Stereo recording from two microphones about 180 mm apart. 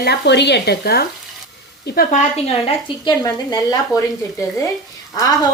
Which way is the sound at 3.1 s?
20° left (ahead or behind).